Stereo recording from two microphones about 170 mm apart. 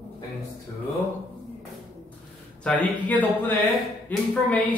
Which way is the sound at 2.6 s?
10° left (ahead or behind).